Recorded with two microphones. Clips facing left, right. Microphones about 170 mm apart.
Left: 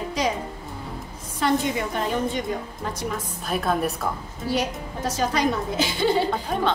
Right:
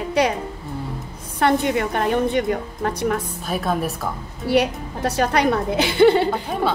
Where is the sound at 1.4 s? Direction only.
60° right (ahead or behind).